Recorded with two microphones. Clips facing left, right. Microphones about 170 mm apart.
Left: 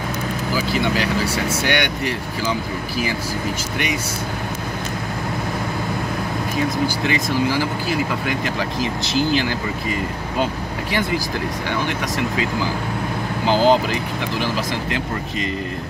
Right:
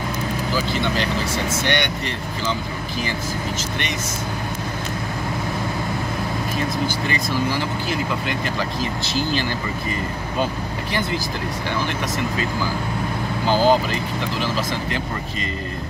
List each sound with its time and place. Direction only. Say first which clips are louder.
0.7 s speech: left 2 dB; 10° left (ahead or behind)
13.5 s speech: left 1 dB; 20° left (ahead or behind)